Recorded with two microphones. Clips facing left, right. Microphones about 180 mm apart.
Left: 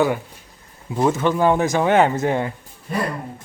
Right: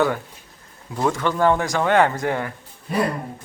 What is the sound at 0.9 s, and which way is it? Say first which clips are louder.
Speech: left 3 dB; 20° left (ahead or behind).